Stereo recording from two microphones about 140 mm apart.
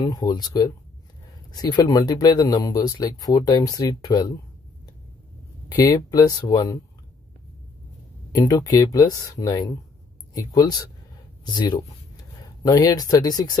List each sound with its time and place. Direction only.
0.0 s speech: 30° left (ahead or behind)
5.9 s speech: 25° left (ahead or behind)
8.5 s speech: 25° left (ahead or behind)
12.4 s speech: 25° left (ahead or behind)